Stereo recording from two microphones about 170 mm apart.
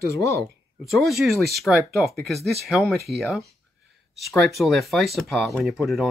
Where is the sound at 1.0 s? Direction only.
Centre (ahead or behind).